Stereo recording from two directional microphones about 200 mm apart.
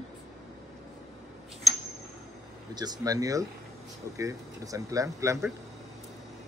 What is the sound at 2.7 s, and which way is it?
Speech, 20° right (ahead or behind).